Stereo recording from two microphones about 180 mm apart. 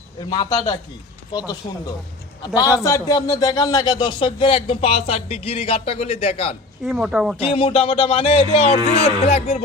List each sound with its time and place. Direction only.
0.3 s speech: 20° left (ahead or behind)
2.6 s a man's voice: 20° left (ahead or behind)
6.8 s speech: 5° right (ahead or behind)
7.3 s a man's voice: 30° left (ahead or behind)